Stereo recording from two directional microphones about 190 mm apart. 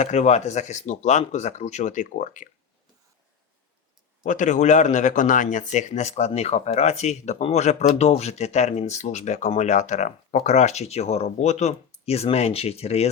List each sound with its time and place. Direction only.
0.0 s speech: 35° left (ahead or behind)
4.2 s speech: 40° left (ahead or behind)